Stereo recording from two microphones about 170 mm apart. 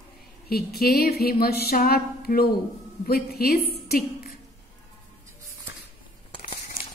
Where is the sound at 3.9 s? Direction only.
60° left (ahead or behind).